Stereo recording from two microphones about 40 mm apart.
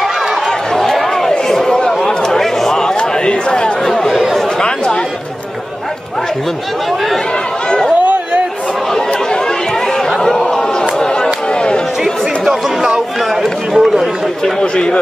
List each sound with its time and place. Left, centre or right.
0.5 s a sound: centre
1.5 s a sound: centre
3.9 s chatter: centre
4.6 s chatter: left
7.6 s chatter: centre
9.1 s chatter: centre
10.5 s a sound: centre
11.0 s chatter: centre
11.4 s music: left
12.0 s music: centre
13.4 s run: centre
14.4 s run: left